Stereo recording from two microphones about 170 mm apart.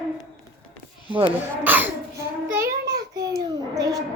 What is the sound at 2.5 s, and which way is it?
Child singing, 60° right (ahead or behind).